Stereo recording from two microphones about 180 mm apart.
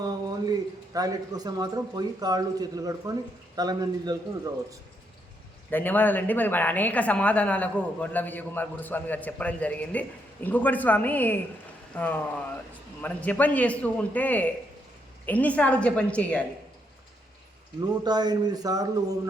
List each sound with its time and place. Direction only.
0.0 s a sound: 20° right (ahead or behind)
0.9 s a man's voice: 20° right (ahead or behind)
5.7 s a woman's voice: 10° left (ahead or behind)
17.7 s a man's voice: 25° right (ahead or behind)